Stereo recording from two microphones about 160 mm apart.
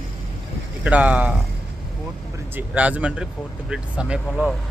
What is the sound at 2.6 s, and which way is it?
Speech, 10° right (ahead or behind).